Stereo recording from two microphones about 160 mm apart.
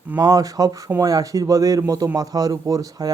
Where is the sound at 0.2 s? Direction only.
25° right (ahead or behind).